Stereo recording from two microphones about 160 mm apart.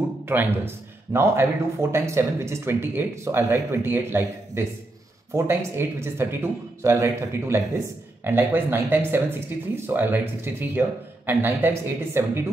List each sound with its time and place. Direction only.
0.3 s a man's voice: 15° right (ahead or behind)